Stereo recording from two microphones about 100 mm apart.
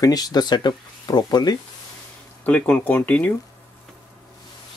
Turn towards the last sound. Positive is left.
turn(degrees=15)  # may be behind; listen again after turning